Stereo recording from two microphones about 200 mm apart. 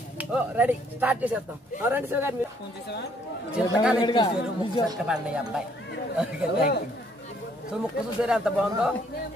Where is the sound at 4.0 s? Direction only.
20° left (ahead or behind).